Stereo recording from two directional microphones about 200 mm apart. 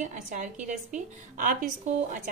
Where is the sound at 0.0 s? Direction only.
40° right (ahead or behind).